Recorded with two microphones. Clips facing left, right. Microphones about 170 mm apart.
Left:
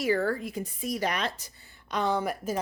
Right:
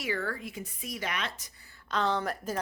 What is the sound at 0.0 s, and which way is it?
Speech, 40° left (ahead or behind).